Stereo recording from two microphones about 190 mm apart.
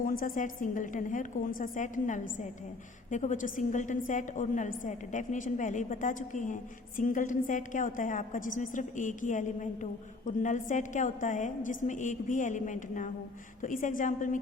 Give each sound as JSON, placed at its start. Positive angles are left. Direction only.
{"t": 0.0, "sound": "a woman's voice", "side_deg": 50}